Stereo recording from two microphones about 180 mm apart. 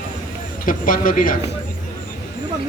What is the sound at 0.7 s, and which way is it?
Speech, 50° left (ahead or behind).